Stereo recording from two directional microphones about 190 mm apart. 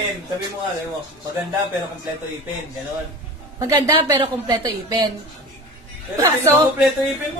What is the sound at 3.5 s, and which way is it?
A woman's voice, 15° right (ahead or behind).